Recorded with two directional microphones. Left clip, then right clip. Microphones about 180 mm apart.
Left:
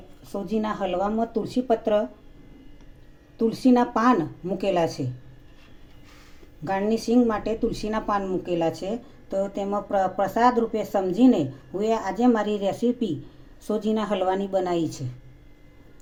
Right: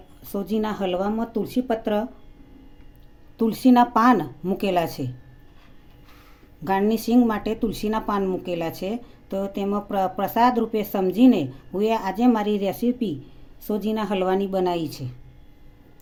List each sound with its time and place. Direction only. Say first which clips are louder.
0.3 s speech: right 1 dB; 40° right (ahead or behind)
3.3 s speech: right 3 dB; 50° right (ahead or behind)
6.7 s speech: right 2 dB; 45° right (ahead or behind)